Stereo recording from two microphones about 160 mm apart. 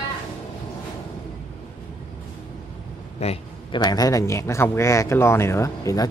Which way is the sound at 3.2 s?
40° left (ahead or behind).